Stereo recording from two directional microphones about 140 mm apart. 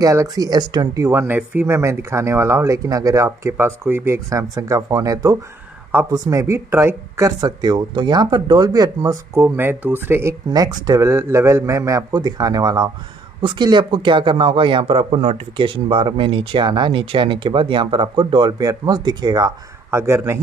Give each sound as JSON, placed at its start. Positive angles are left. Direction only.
{"t": 0.0, "sound": "speech", "side_deg": -25}
{"t": 19.9, "sound": "speech", "side_deg": -20}